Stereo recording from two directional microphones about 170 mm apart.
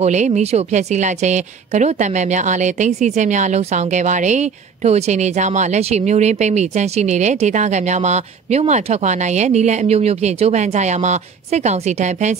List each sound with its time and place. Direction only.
0.0 s a woman's voice: 45° right (ahead or behind)